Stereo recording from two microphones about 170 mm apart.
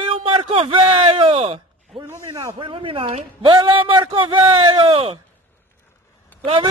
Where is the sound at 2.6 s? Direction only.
30° right (ahead or behind).